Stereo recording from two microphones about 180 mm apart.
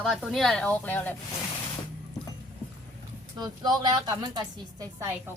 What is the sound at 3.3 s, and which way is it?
A woman's voice, 20° right (ahead or behind).